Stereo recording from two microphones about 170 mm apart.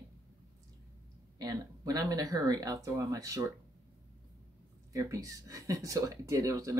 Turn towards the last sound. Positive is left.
turn(degrees=-20)  # may be behind; listen again after turning